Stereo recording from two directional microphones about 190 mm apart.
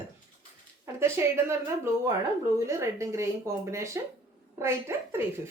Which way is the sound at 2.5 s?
15° right (ahead or behind).